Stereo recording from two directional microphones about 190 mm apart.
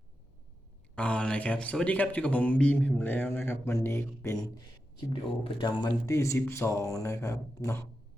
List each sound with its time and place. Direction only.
0.9 s speech: 5° left (ahead or behind); by 5.7 s 25° left (ahead or behind)
5.8 s speech: 15° left (ahead or behind)